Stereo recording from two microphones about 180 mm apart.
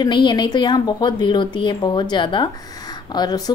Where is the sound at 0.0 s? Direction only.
25° left (ahead or behind).